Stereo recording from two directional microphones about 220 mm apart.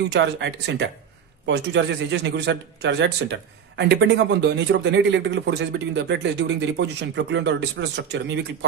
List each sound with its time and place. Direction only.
0.1 s a man's voice: 50° right (ahead or behind)